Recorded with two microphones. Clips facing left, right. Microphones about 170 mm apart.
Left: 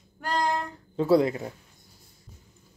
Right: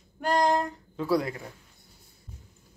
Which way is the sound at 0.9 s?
25° left (ahead or behind).